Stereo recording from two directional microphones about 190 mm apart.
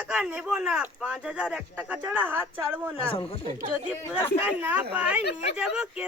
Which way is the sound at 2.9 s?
30° left (ahead or behind).